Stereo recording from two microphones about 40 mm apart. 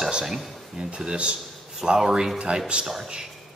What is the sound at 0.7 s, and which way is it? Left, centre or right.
Speech, right.